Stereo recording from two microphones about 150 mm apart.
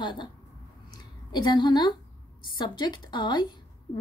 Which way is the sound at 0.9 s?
30° left (ahead or behind).